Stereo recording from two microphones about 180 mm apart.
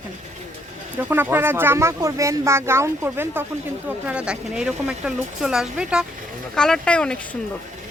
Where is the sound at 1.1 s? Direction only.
10° right (ahead or behind); by 7.2 s 5° left (ahead or behind).